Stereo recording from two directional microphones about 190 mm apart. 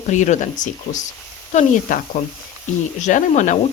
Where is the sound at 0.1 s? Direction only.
40° left (ahead or behind).